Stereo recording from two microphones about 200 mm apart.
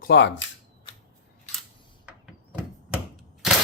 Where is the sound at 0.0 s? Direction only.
55° left (ahead or behind).